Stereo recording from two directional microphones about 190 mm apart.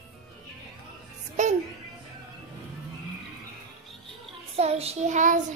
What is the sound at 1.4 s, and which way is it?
Music, 40° right (ahead or behind).